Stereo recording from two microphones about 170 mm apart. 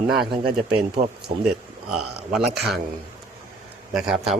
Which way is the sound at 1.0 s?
45° right (ahead or behind).